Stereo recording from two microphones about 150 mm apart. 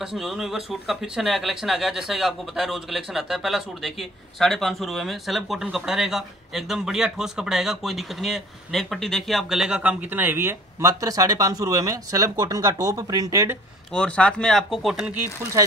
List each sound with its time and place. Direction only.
0.0 s speech: 5° right (ahead or behind); by 13.6 s 20° right (ahead or behind)
13.9 s speech: 5° left (ahead or behind)